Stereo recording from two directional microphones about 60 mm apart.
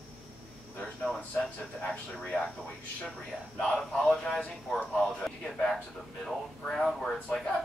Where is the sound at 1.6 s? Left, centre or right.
Centre.